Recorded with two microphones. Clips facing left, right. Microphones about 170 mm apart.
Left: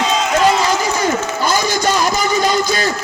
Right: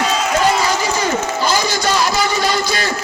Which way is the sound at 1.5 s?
50° left (ahead or behind).